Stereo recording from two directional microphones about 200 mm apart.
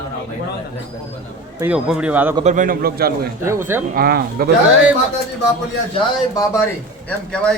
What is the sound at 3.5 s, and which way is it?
Speech, 10° right (ahead or behind).